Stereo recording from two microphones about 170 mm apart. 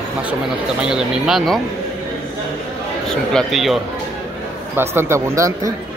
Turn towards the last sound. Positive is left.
turn(degrees=-20)  # may be behind; listen again after turning